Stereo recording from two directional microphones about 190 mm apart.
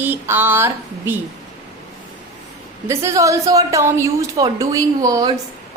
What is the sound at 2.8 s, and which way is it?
A woman's voice, 15° right (ahead or behind).